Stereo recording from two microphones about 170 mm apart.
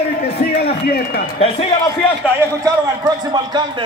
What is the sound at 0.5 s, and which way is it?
Speech, 65° left (ahead or behind).